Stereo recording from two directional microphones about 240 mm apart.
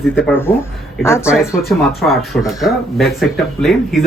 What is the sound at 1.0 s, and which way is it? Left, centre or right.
Speech, centre.